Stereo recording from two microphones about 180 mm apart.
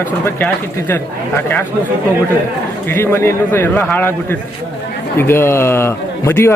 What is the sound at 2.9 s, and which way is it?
A man's voice, 15° left (ahead or behind).